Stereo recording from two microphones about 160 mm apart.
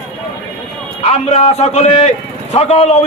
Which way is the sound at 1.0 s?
40° left (ahead or behind).